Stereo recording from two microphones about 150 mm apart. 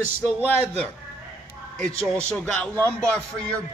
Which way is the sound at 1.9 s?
20° right (ahead or behind).